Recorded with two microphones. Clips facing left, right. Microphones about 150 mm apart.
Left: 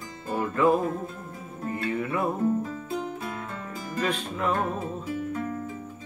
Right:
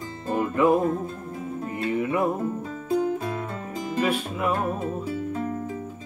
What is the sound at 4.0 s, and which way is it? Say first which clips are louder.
Music: right 3 dB; 5° right (ahead or behind).